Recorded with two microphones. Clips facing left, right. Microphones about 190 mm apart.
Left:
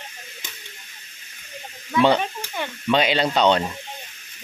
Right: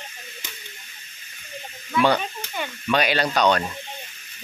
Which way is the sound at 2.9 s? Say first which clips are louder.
Left 2 dB; 20° left (ahead or behind).